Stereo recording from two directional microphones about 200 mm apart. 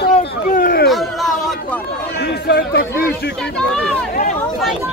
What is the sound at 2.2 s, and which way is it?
Chatter, 50° left (ahead or behind).